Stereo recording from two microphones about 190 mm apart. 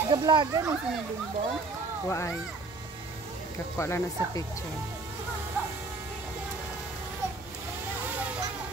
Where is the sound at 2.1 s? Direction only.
15° left (ahead or behind).